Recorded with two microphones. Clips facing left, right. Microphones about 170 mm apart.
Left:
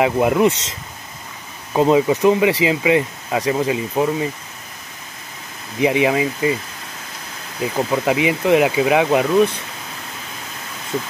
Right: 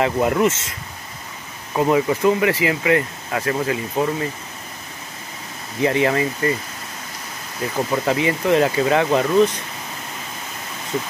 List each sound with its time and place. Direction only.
0.0 s speech: 15° left (ahead or behind)
1.7 s speech: 20° left (ahead or behind)
5.8 s speech: 15° left (ahead or behind)
7.6 s speech: 10° left (ahead or behind)